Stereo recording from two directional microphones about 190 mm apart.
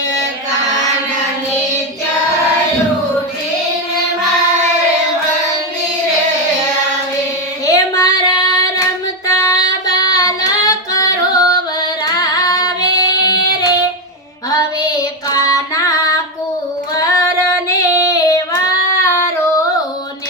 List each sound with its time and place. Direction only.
7.6 s child singing: 20° left (ahead or behind)
9.2 s female singing: 20° left (ahead or behind)
15.3 s child singing: 15° left (ahead or behind)